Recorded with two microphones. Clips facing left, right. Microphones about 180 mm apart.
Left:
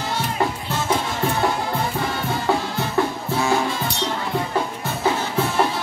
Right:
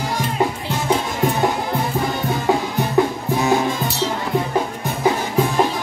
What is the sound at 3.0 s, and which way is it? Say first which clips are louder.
Music: right 4 dB; 15° right (ahead or behind).